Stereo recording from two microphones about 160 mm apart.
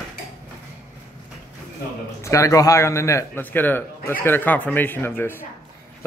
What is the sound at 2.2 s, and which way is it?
Speech, 20° left (ahead or behind).